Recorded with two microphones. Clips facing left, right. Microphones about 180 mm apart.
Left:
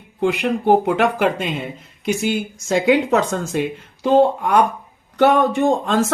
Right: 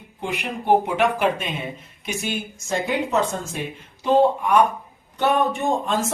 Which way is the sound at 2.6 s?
90° left.